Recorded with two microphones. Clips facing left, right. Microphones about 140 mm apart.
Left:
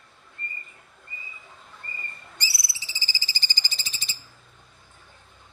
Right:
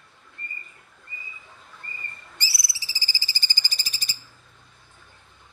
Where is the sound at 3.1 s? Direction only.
20° left (ahead or behind).